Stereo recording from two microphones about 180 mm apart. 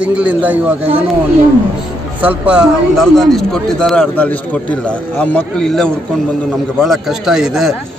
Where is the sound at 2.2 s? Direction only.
5° right (ahead or behind).